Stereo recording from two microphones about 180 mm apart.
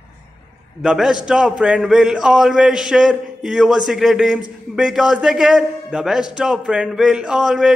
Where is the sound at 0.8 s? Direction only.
5° right (ahead or behind).